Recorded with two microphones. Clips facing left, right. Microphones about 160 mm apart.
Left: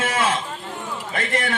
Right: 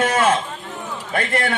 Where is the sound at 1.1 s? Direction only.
40° right (ahead or behind).